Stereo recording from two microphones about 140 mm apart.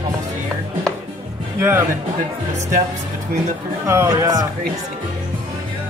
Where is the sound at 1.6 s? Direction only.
15° right (ahead or behind).